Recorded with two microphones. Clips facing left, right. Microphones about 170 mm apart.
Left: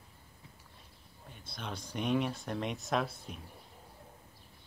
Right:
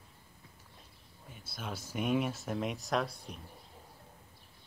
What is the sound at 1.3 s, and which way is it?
Speech, 5° right (ahead or behind).